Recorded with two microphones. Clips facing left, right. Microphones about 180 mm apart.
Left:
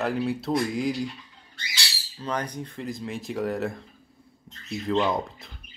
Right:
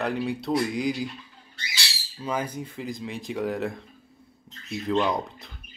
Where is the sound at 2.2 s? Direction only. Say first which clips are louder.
Right 1 dB; 5° right (ahead or behind).